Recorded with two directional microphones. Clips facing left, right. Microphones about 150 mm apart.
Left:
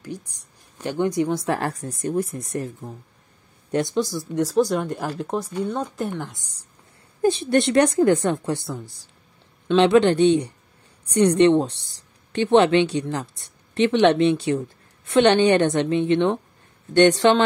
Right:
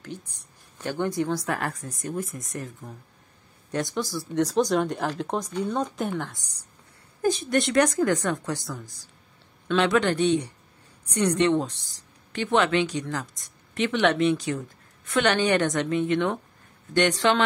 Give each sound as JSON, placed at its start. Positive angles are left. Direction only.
{"t": 0.0, "sound": "speech", "side_deg": 10}
{"t": 3.7, "sound": "a woman's voice", "side_deg": 20}
{"t": 4.5, "sound": "speech", "side_deg": 5}
{"t": 7.2, "sound": "a woman's voice", "side_deg": 30}
{"t": 16.9, "sound": "speech", "side_deg": 35}